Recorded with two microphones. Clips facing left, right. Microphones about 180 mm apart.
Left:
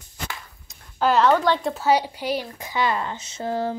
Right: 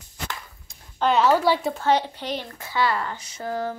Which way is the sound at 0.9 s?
Centre (ahead or behind).